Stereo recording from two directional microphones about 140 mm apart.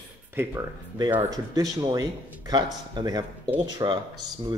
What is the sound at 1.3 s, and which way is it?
Speech, 25° right (ahead or behind).